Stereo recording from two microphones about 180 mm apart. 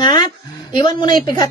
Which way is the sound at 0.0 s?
25° left (ahead or behind).